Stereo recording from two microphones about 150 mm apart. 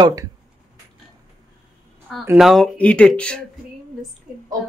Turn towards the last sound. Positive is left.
turn(degrees=-5)  # may be behind; listen again after turning